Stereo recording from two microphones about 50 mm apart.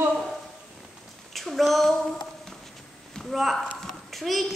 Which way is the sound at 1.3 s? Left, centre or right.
Centre.